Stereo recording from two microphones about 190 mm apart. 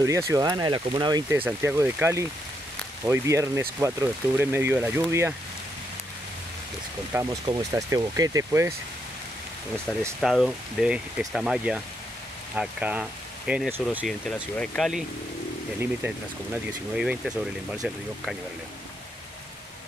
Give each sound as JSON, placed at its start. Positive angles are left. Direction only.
{"t": 0.3, "sound": "speech", "side_deg": -15}
{"t": 7.1, "sound": "speech", "side_deg": -15}
{"t": 9.9, "sound": "speech", "side_deg": 5}
{"t": 13.9, "sound": "speech", "side_deg": 0}
{"t": 16.9, "sound": "speech", "side_deg": -5}